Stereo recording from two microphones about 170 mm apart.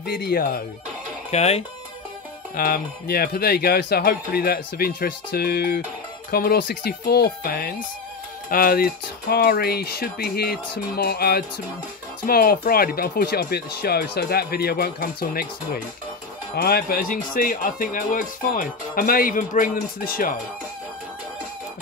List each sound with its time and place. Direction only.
0.0 s speech: 65° left (ahead or behind)
1.3 s speech: 40° left (ahead or behind)
2.5 s speech: 55° left (ahead or behind)